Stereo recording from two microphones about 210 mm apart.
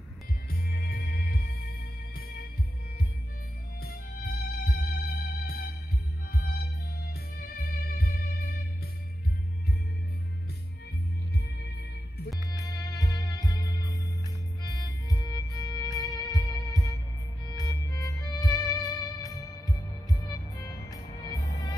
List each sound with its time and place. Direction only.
0.5 s music: 45° left (ahead or behind)
3.8 s music: 45° left (ahead or behind)
7.4 s music: 45° left (ahead or behind)
12.4 s music: 15° left (ahead or behind)